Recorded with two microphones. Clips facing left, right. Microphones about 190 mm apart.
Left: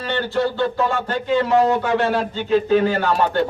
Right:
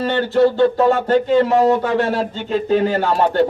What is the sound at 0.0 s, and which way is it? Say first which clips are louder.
A man's voice: right 6 dB; 40° right (ahead or behind).